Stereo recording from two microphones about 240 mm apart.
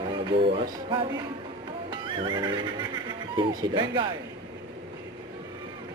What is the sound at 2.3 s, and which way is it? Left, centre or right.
Speech, centre.